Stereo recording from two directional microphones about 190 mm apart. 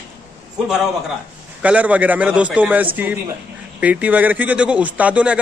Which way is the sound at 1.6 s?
5° right (ahead or behind).